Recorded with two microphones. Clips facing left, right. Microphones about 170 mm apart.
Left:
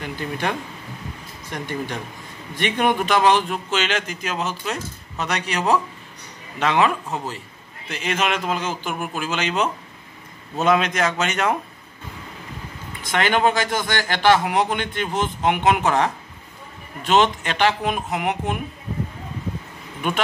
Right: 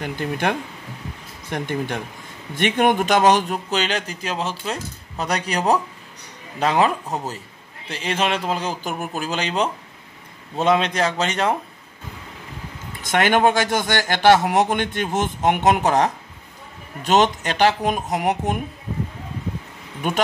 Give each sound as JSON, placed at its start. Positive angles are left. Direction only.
{"t": 0.0, "sound": "a man's voice", "side_deg": -50}
{"t": 13.0, "sound": "a man's voice", "side_deg": -45}